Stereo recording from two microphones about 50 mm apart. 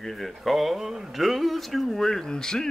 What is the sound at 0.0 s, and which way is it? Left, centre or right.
Speech, centre.